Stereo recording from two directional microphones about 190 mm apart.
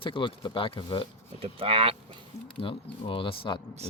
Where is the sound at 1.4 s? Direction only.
30° right (ahead or behind).